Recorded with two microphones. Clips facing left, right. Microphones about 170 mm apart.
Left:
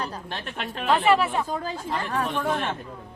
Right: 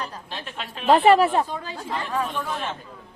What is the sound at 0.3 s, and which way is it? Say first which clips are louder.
Speech: left 2 dB; 55° left (ahead or behind).